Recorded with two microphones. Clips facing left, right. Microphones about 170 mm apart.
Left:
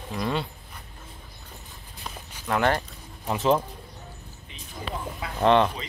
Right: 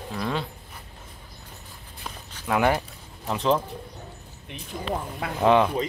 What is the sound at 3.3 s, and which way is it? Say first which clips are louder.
Speech: left 1 dB; 5° left (ahead or behind).